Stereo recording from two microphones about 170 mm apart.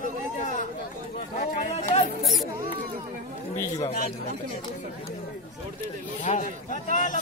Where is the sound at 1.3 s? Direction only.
50° left (ahead or behind).